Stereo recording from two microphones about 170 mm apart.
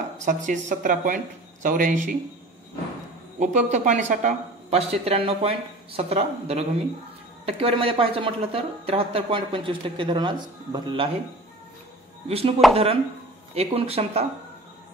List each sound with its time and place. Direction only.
0.2 s a woman's voice: 45° right (ahead or behind)
3.3 s speech: 45° right (ahead or behind); by 11.1 s 25° right (ahead or behind)
12.3 s speech: 35° right (ahead or behind)
13.6 s speech: 35° right (ahead or behind)